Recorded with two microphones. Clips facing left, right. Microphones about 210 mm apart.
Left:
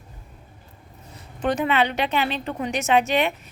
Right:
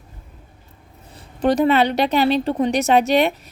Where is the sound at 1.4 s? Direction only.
35° right (ahead or behind).